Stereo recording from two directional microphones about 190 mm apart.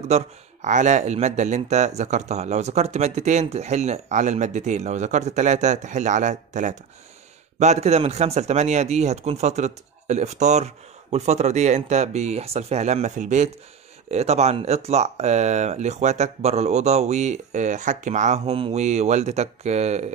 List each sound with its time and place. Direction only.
0.1 s speech: 40° right (ahead or behind)